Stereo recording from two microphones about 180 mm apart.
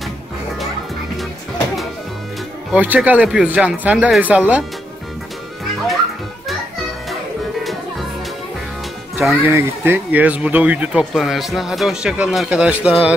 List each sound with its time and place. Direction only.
2.7 s speech: 10° right (ahead or behind)
9.4 s speech: 15° right (ahead or behind)